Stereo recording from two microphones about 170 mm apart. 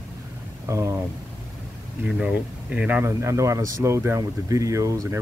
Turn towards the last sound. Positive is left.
turn(degrees=-20)  # may be behind; listen again after turning